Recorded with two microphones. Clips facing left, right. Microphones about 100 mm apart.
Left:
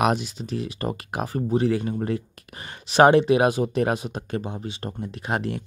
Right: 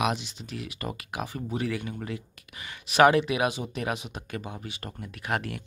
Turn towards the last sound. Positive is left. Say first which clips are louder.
# left 4 dB
turn(degrees=25)  # may be behind; listen again after turning